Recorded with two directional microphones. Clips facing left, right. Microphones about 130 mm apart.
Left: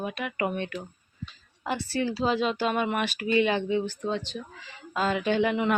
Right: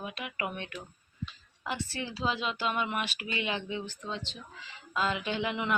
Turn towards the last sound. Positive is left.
turn(degrees=45)  # may be behind; listen again after turning